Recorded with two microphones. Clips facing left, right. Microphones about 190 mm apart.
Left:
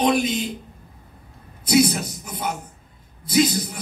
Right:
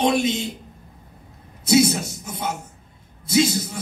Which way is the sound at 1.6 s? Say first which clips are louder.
Right 1 dB; 25° right (ahead or behind).